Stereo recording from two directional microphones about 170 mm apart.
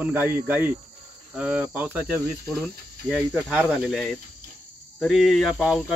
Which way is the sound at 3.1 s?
5° right (ahead or behind).